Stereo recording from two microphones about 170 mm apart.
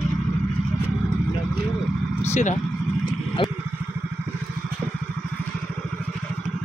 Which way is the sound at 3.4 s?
30° left (ahead or behind).